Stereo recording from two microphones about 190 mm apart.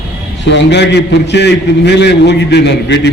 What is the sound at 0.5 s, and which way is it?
A man's voice, 65° left (ahead or behind).